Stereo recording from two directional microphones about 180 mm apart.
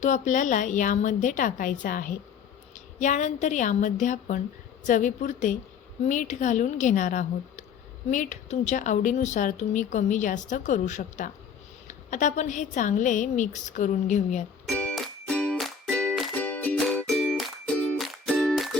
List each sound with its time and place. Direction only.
0.0 s a woman's voice: 45° left (ahead or behind)
14.7 s music: 5° left (ahead or behind)